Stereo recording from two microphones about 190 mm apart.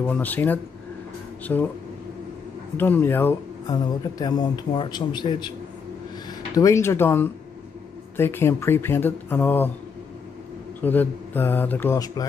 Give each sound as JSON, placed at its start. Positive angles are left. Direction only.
{"t": 0.0, "sound": "speech", "side_deg": 10}
{"t": 2.8, "sound": "a man's voice", "side_deg": 10}
{"t": 6.5, "sound": "speech", "side_deg": 15}
{"t": 10.8, "sound": "speech", "side_deg": 10}